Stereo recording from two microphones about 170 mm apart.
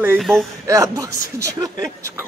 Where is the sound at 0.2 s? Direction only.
Centre (ahead or behind).